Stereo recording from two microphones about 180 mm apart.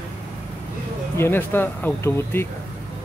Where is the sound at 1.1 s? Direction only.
10° left (ahead or behind).